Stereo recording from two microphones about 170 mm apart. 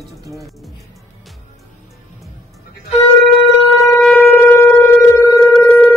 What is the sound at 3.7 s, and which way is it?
Shofar, centre (ahead or behind).